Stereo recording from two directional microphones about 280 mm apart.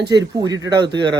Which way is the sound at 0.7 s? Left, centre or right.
Centre.